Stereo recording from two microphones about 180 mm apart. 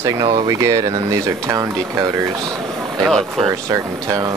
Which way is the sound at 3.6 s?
15° right (ahead or behind).